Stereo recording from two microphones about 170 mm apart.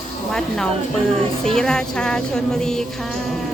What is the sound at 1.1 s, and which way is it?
Speech, 5° left (ahead or behind).